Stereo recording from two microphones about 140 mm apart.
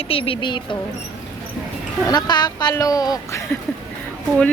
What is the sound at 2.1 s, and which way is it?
Speech, 30° left (ahead or behind).